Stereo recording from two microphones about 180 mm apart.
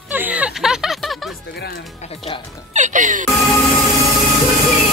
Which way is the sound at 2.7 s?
45° right (ahead or behind).